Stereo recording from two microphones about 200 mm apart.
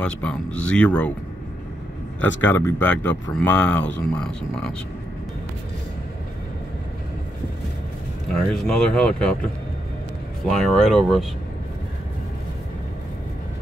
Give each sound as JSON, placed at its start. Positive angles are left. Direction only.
{"t": 0.0, "sound": "speech", "side_deg": 5}
{"t": 2.2, "sound": "speech", "side_deg": 10}
{"t": 8.4, "sound": "speech", "side_deg": 5}
{"t": 10.4, "sound": "speech", "side_deg": 0}